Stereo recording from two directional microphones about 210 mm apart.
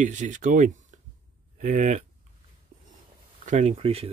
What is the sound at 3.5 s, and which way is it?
Speech, 30° right (ahead or behind).